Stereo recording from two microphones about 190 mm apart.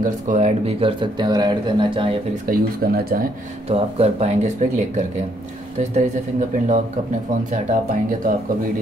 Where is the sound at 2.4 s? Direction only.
50° right (ahead or behind).